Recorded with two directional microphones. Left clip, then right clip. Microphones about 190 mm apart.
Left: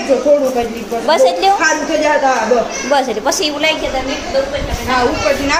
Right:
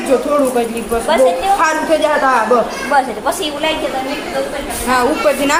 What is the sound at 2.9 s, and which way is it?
Speech, 30° left (ahead or behind).